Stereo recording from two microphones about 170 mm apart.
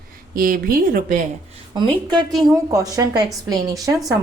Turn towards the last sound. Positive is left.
turn(degrees=-20)  # may be behind; listen again after turning